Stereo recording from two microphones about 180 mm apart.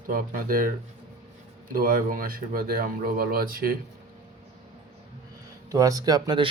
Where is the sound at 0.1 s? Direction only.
50° right (ahead or behind).